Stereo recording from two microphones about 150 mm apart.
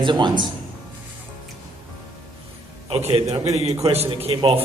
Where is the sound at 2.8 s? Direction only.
40° right (ahead or behind).